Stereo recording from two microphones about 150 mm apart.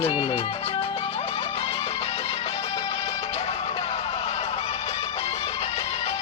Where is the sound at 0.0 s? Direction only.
40° left (ahead or behind).